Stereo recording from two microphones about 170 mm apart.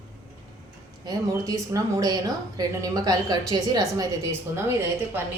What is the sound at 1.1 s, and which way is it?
A woman's voice, 20° right (ahead or behind).